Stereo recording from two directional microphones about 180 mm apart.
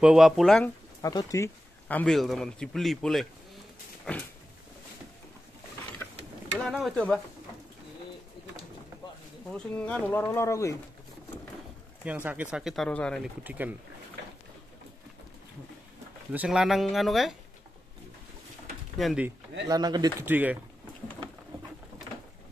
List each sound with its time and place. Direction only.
0.0 s a man's voice: 5° right (ahead or behind)
1.0 s a man's voice: 15° left (ahead or behind)
6.6 s a man's voice: centre (ahead or behind)
9.5 s speech: 5° left (ahead or behind)
12.0 s a man's voice: 10° right (ahead or behind)
13.4 s speech: 10° right (ahead or behind)
16.3 s a man's voice: 5° right (ahead or behind)
18.9 s a man's voice: centre (ahead or behind)
19.7 s speech: 20° right (ahead or behind)
20.2 s speech: 10° right (ahead or behind)